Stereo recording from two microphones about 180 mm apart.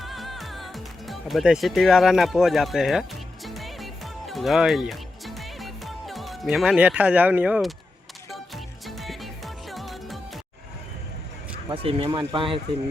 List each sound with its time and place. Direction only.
0.0 s music: centre (ahead or behind)
11.7 s speech: 30° right (ahead or behind)